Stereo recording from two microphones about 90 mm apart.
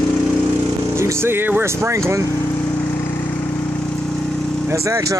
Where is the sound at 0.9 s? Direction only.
30° right (ahead or behind).